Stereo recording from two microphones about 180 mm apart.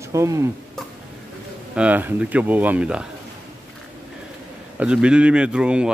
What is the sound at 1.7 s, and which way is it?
Speech, 5° right (ahead or behind).